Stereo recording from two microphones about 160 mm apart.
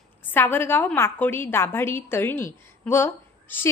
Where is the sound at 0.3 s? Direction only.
10° left (ahead or behind).